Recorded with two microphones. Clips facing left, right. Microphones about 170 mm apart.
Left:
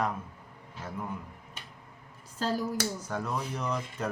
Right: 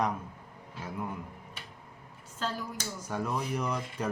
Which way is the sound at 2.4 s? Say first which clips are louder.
Left 5 dB; 40° left (ahead or behind).